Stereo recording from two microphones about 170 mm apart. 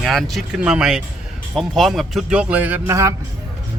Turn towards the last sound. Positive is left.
turn(degrees=-15)  # may be behind; listen again after turning